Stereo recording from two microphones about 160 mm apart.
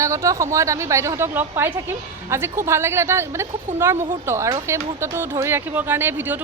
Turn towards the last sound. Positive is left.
turn(degrees=-15)  # may be behind; listen again after turning